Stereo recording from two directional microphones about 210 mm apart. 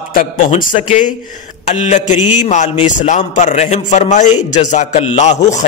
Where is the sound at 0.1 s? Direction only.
40° left (ahead or behind).